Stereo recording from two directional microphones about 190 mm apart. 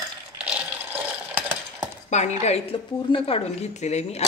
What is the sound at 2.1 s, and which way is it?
A woman's voice, 35° left (ahead or behind).